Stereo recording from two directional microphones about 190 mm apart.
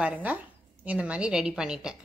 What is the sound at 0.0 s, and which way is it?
A woman's voice, 10° right (ahead or behind).